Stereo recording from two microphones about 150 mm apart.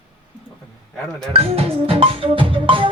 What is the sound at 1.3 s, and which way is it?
Music, 40° right (ahead or behind).